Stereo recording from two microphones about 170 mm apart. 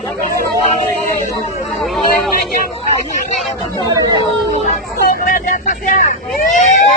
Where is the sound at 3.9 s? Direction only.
25° right (ahead or behind).